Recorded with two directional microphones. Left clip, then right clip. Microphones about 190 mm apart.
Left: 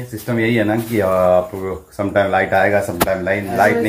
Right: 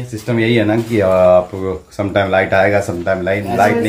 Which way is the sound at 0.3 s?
5° right (ahead or behind).